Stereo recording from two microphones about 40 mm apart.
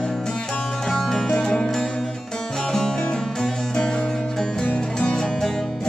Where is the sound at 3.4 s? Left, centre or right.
Centre.